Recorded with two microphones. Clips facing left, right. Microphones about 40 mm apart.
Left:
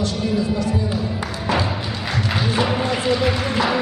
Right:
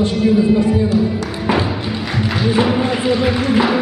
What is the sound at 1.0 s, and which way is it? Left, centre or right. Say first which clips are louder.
Music: right 7 dB; centre.